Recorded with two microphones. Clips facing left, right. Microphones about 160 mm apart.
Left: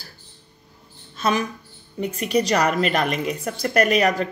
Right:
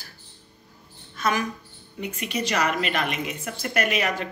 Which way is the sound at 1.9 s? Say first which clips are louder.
Left 8 dB; 40° left (ahead or behind).